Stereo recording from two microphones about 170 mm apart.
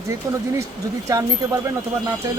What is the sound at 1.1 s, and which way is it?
Speech, 20° right (ahead or behind).